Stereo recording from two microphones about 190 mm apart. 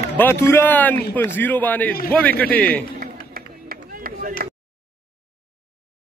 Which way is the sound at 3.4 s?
50° right (ahead or behind).